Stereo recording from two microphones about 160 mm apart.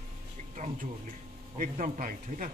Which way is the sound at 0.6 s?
55° right (ahead or behind).